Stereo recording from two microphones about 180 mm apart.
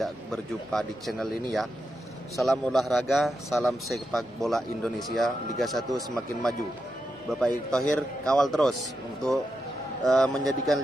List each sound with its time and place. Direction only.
0.0 s a man's voice: centre (ahead or behind)
10.0 s a man's voice: centre (ahead or behind)